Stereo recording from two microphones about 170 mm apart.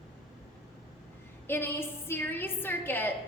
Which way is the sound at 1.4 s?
10° left (ahead or behind).